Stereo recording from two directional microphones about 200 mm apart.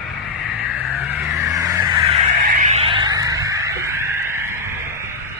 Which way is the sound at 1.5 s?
15° right (ahead or behind).